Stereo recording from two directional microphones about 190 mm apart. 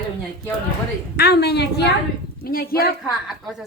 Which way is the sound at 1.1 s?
55° left (ahead or behind).